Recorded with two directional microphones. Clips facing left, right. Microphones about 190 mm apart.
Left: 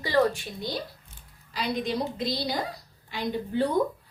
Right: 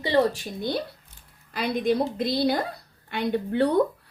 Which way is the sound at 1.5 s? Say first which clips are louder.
Right 5 dB; 55° right (ahead or behind).